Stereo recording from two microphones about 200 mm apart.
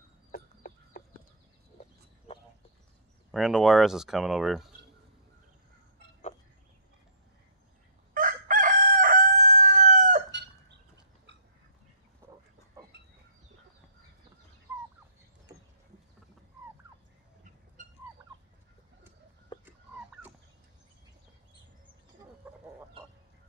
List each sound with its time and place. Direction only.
0.3 s chicken: 50° left (ahead or behind)
2.3 s a sound: 30° left (ahead or behind)
3.3 s speech: centre (ahead or behind)
8.1 s chicken: 40° right (ahead or behind)
17.8 s turkey: 40° right (ahead or behind)
22.4 s fowl: 5° right (ahead or behind)